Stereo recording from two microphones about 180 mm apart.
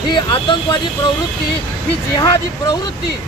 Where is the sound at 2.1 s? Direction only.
20° left (ahead or behind).